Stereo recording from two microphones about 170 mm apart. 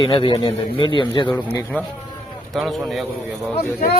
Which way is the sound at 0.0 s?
30° left (ahead or behind).